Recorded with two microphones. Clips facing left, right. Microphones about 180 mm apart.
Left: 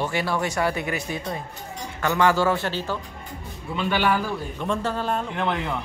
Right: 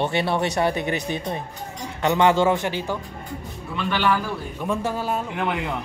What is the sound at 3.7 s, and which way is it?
Speech, 10° left (ahead or behind).